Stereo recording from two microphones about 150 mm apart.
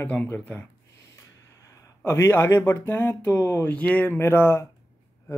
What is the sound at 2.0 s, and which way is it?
Speech, 15° left (ahead or behind).